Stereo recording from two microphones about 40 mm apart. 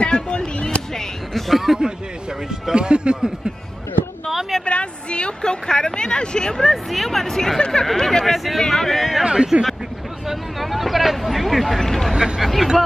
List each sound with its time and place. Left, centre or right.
0.0 s a sound: left
0.7 s a sound: centre
1.5 s speech: centre
2.7 s speech: right
4.3 s a sound: centre
4.6 s a woman's voice: left
6.5 s speech: centre
9.2 s speech: right
10.2 s speech: centre
12.1 s speech: centre
12.4 s speech: centre